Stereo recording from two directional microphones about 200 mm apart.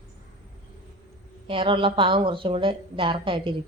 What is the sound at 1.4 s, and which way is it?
A woman's voice, 25° right (ahead or behind).